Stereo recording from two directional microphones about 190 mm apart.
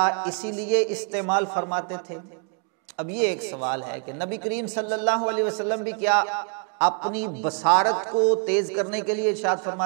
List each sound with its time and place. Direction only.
0.0 s a man's voice: 15° right (ahead or behind)
3.6 s a man's voice: 10° right (ahead or behind)
6.9 s a man's voice: 25° right (ahead or behind)
7.2 s a man's voice: 15° right (ahead or behind)
7.9 s a man's voice: 25° right (ahead or behind)
8.5 s a man's voice: 10° right (ahead or behind)